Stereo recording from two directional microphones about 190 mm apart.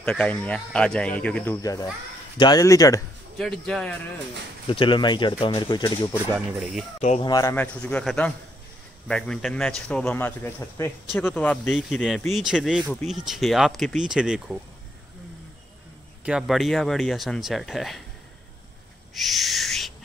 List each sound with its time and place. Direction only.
0.0 s speech: 5° left (ahead or behind)
3.3 s speech: centre (ahead or behind)
4.6 s speech: 25° left (ahead or behind)
6.3 s speech: 5° right (ahead or behind)
7.2 s speech: 20° left (ahead or behind)
7.5 s speech: 5° left (ahead or behind)
16.3 s speech: 5° right (ahead or behind)
19.1 s owl: centre (ahead or behind)